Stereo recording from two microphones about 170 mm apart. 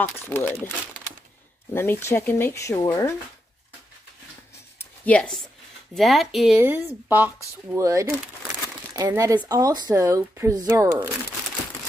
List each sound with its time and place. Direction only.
0.0 s speech: 15° left (ahead or behind)
1.7 s speech: 15° left (ahead or behind)
5.0 s speech: 5° left (ahead or behind)
6.6 s a woman's voice: 10° right (ahead or behind)